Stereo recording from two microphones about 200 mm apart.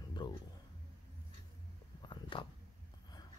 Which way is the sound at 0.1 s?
20° left (ahead or behind).